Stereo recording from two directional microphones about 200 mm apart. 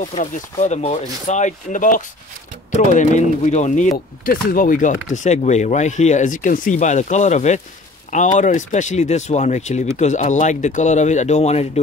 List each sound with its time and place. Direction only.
0.1 s speech: 35° left (ahead or behind)